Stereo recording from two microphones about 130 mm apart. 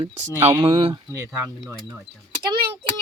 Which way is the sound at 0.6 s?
45° right (ahead or behind).